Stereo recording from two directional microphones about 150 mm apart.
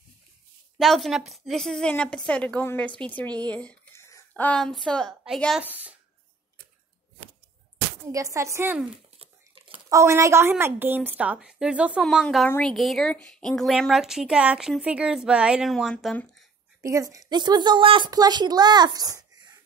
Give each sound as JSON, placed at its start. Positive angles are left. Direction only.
{"t": 0.7, "sound": "a woman's voice", "side_deg": 0}
{"t": 4.3, "sound": "a woman's voice", "side_deg": 5}
{"t": 5.6, "sound": "a woman's voice", "side_deg": -10}
{"t": 8.1, "sound": "a woman's voice", "side_deg": -20}
{"t": 8.9, "sound": "a sound", "side_deg": -40}
{"t": 9.8, "sound": "a woman's voice", "side_deg": -20}
{"t": 12.4, "sound": "a woman's voice", "side_deg": 15}
{"t": 12.7, "sound": "a woman's voice", "side_deg": 0}
{"t": 16.8, "sound": "a woman's voice", "side_deg": -20}